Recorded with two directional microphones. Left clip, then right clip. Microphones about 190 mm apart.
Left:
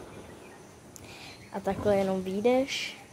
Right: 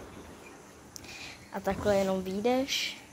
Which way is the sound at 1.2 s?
10° left (ahead or behind).